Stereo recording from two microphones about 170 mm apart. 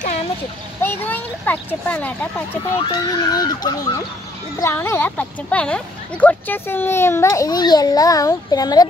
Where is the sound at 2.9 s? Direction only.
25° left (ahead or behind).